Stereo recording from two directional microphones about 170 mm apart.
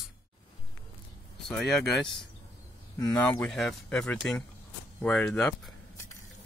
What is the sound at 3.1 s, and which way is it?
Speech, 10° left (ahead or behind).